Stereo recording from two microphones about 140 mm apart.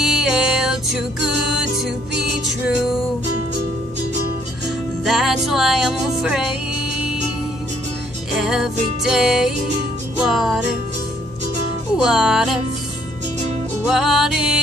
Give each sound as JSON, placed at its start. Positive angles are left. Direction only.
{"t": 0.0, "sound": "music", "side_deg": -5}
{"t": 5.0, "sound": "music", "side_deg": 0}
{"t": 8.4, "sound": "music", "side_deg": -5}
{"t": 12.0, "sound": "music", "side_deg": -5}
{"t": 13.8, "sound": "music", "side_deg": 0}